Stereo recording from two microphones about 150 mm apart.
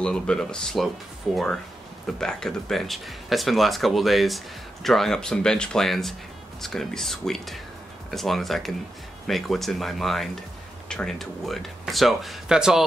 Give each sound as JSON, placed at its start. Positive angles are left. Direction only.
{"t": 0.0, "sound": "speech", "side_deg": 5}